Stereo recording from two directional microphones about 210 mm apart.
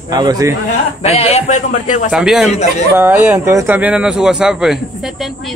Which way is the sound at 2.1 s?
Centre (ahead or behind).